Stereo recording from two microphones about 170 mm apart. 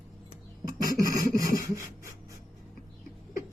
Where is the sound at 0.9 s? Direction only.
20° right (ahead or behind).